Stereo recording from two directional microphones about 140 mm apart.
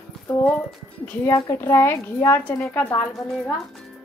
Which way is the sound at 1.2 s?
20° left (ahead or behind).